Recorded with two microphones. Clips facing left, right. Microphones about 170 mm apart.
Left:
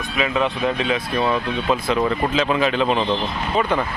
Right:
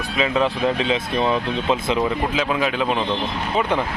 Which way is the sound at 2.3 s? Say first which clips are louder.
Left 2 dB; 10° right (ahead or behind).